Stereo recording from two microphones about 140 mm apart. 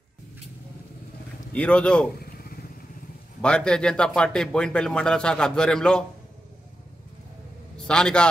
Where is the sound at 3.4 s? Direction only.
5° left (ahead or behind).